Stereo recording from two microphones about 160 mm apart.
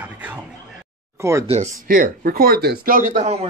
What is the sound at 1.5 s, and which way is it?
Speech, 50° right (ahead or behind).